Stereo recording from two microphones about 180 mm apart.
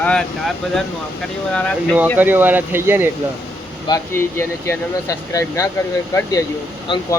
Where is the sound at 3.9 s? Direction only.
15° left (ahead or behind).